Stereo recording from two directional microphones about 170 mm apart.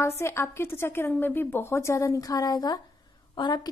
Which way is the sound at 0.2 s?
15° left (ahead or behind).